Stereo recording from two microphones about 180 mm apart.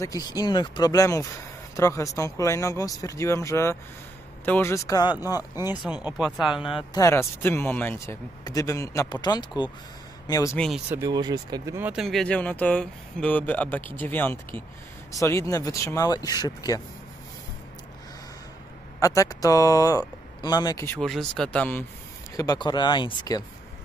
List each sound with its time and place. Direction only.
0.0 s speech: 20° left (ahead or behind)
5.9 s speech: 10° right (ahead or behind)
6.9 s speech: 15° left (ahead or behind)
11.0 s speech: 20° right (ahead or behind)
11.9 s speech: centre (ahead or behind); by 16.8 s 20° left (ahead or behind)
18.9 s speech: 20° left (ahead or behind)
21.0 s speech: 5° left (ahead or behind)
22.4 s speech: 20° left (ahead or behind)